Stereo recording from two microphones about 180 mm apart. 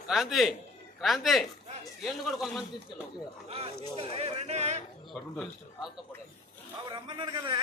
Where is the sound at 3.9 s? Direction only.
30° right (ahead or behind).